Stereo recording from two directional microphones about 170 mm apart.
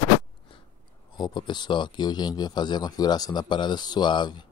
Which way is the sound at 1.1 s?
25° left (ahead or behind).